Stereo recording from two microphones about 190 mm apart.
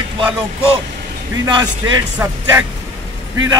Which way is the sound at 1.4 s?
15° right (ahead or behind).